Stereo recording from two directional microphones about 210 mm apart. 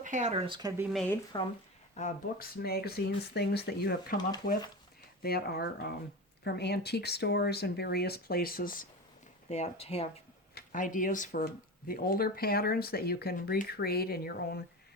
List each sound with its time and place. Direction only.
0.0 s speech: 35° right (ahead or behind)
0.9 s speech: 5° left (ahead or behind)
2.0 s speech: 40° left (ahead or behind)
5.2 s speech: 50° left (ahead or behind)
9.5 s speech: 30° left (ahead or behind)
10.5 s speech: 40° left (ahead or behind)